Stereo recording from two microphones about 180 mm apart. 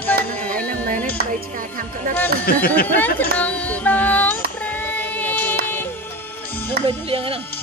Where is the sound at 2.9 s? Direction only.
10° left (ahead or behind).